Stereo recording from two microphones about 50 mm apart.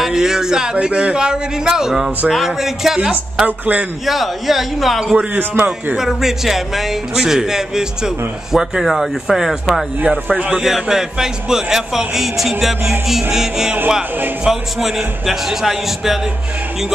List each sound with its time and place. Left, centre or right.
0.0 s a man's voice: centre
3.4 s speech: right
4.0 s speech: centre
5.1 s speech: right
5.9 s a man's voice: centre
9.9 s speech: right
10.6 s a man's voice: centre